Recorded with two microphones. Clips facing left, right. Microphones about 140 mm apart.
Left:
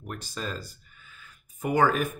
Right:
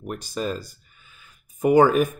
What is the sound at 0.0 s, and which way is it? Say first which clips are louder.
Speech: right 7 dB; 15° right (ahead or behind).